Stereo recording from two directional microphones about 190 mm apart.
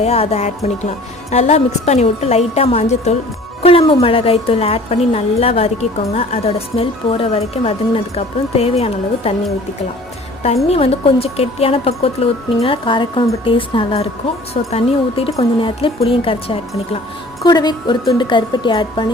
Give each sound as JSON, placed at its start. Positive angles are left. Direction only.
{"t": 0.0, "sound": "speech", "side_deg": 30}
{"t": 10.4, "sound": "speech", "side_deg": 35}